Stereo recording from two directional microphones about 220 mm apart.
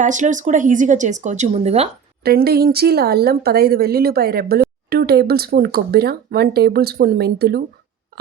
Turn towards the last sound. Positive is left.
turn(degrees=-45)  # may be behind; listen again after turning